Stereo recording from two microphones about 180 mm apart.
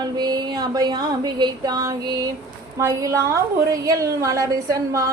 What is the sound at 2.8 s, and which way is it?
A woman's voice, 15° right (ahead or behind).